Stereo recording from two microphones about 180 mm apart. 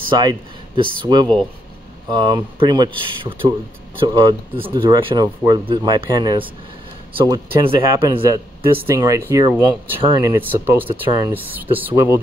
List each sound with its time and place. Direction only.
0.1 s speech: 25° right (ahead or behind)
7.8 s speech: 15° right (ahead or behind)
10.9 s speech: 20° right (ahead or behind)